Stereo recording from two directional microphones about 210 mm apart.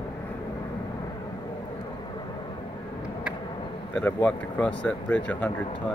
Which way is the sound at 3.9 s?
5° left (ahead or behind).